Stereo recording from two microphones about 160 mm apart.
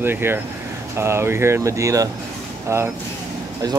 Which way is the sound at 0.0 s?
15° right (ahead or behind).